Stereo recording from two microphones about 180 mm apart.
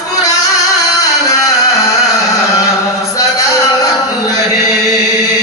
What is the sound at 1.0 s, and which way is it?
Music, 20° left (ahead or behind).